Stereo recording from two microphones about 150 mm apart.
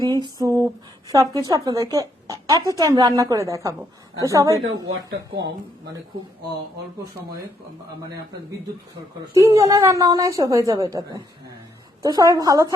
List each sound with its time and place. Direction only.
0.0 s a sound: 25° right (ahead or behind)
1.1 s a woman's voice: 25° right (ahead or behind)
9.3 s a woman's voice: 20° right (ahead or behind)